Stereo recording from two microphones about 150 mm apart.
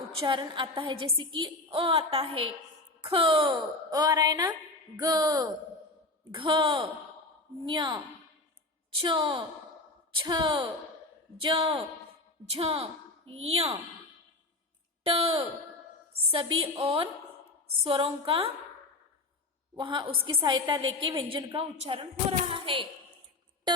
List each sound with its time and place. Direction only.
0.1 s a woman's voice: 35° right (ahead or behind)
9.0 s a woman's voice: 35° right (ahead or behind)
15.0 s a woman's voice: 40° right (ahead or behind)
19.8 s a woman's voice: 30° right (ahead or behind)
23.7 s a sound: 30° right (ahead or behind)